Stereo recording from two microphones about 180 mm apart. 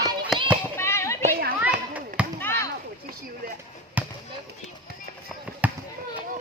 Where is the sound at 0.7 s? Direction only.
15° left (ahead or behind).